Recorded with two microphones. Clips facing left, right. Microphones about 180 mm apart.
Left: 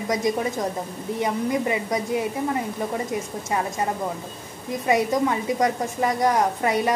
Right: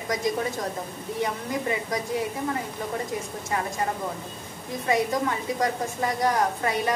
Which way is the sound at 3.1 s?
20° left (ahead or behind).